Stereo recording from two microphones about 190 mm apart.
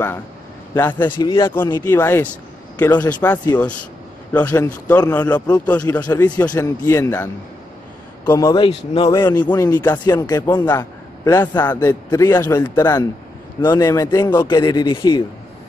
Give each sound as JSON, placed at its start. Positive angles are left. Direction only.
{"t": 0.7, "sound": "a man's voice", "side_deg": 10}
{"t": 1.2, "sound": "a man's voice", "side_deg": 20}
{"t": 6.0, "sound": "a man's voice", "side_deg": 20}
{"t": 8.3, "sound": "a man's voice", "side_deg": 20}